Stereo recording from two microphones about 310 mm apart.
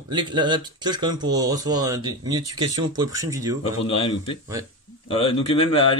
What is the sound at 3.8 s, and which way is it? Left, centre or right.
Speech, centre.